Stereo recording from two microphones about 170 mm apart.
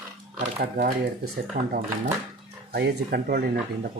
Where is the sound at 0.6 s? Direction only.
55° right (ahead or behind).